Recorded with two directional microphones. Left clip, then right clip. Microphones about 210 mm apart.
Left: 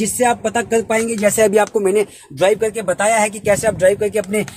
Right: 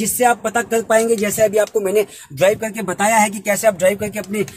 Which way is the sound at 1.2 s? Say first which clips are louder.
Left 2 dB; 45° left (ahead or behind).